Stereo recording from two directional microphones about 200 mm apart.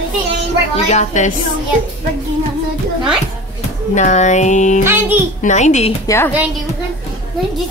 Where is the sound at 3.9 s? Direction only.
35° left (ahead or behind).